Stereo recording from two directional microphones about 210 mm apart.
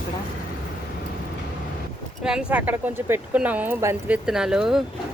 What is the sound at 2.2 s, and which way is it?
Speech, 5° right (ahead or behind).